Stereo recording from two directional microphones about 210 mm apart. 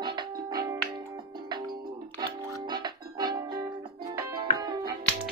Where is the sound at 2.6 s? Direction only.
20° right (ahead or behind).